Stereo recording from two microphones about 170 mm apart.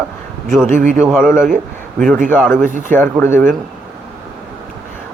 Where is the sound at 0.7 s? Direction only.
50° right (ahead or behind).